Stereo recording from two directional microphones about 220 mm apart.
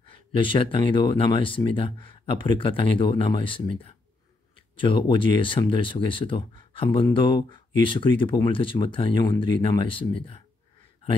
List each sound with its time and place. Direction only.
0.1 s speech: 25° left (ahead or behind)
4.7 s speech: 20° left (ahead or behind)